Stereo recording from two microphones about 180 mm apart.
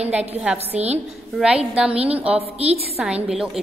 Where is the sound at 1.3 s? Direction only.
5° right (ahead or behind).